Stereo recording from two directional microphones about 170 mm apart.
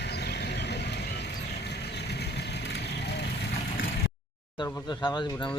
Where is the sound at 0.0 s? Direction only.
80° left.